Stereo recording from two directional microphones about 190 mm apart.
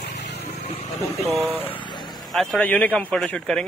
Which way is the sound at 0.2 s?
60° left (ahead or behind).